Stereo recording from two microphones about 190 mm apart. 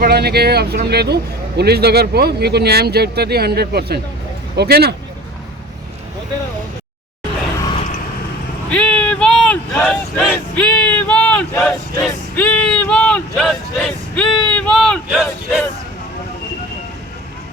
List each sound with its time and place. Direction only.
0.0 s a man's voice: 55° right (ahead or behind)
8.7 s speech: 5° left (ahead or behind)